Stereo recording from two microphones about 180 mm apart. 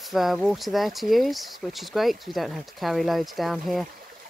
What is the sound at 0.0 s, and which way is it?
Speech, centre (ahead or behind).